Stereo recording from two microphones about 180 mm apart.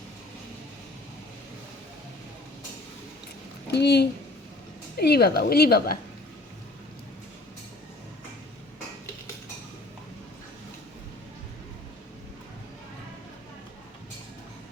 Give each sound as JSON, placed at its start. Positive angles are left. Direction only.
{"t": 3.7, "sound": "a woman's voice", "side_deg": 65}